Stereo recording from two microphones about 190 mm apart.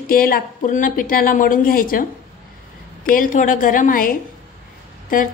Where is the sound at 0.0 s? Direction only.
50° left (ahead or behind).